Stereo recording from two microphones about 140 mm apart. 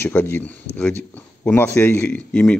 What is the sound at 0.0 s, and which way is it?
A man's voice, 15° left (ahead or behind).